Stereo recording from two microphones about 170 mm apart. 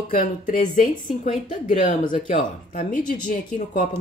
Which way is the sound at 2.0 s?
30° left (ahead or behind).